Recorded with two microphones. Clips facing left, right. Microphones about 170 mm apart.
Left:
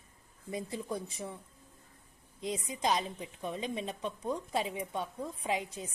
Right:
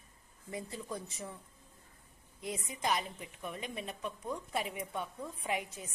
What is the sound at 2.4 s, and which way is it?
A woman's voice, 20° left (ahead or behind).